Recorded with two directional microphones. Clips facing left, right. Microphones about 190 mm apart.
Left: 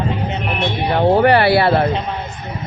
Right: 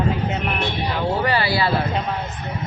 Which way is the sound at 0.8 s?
60° left (ahead or behind).